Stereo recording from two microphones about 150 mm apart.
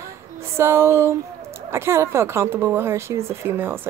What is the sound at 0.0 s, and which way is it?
A woman's voice, 15° right (ahead or behind).